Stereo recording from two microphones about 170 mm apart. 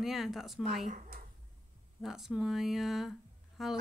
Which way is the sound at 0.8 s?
50° right (ahead or behind).